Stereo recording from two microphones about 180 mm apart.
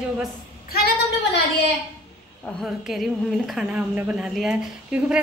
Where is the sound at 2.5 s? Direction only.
Centre (ahead or behind).